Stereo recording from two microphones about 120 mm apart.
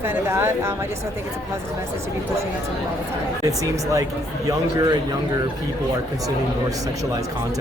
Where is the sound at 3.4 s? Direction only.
30° right (ahead or behind).